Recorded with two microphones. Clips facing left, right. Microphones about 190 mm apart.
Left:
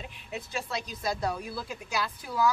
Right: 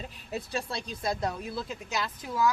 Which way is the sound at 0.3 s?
35° right (ahead or behind).